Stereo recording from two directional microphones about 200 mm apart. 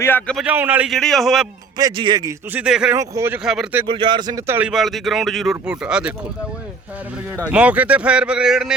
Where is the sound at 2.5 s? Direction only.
5° right (ahead or behind).